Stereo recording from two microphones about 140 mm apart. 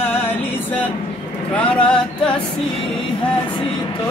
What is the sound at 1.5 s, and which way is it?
Speech, 10° left (ahead or behind).